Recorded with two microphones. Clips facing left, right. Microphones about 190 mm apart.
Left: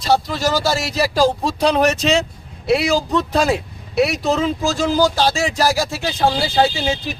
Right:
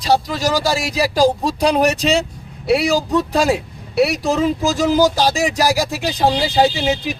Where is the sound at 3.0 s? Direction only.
10° right (ahead or behind).